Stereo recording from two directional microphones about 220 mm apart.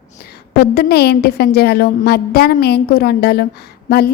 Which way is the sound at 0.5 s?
45° left (ahead or behind).